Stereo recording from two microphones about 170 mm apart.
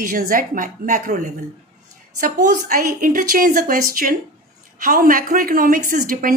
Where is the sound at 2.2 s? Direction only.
50° right (ahead or behind).